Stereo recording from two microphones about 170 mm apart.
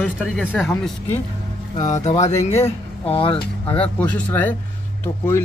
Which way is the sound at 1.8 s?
45° left (ahead or behind).